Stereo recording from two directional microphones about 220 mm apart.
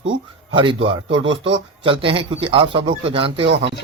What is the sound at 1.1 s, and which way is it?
Speech, 55° right (ahead or behind).